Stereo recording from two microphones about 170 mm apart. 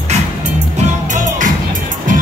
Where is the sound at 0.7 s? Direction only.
45° right (ahead or behind).